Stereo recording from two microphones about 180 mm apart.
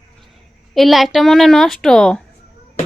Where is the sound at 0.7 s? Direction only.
Centre (ahead or behind).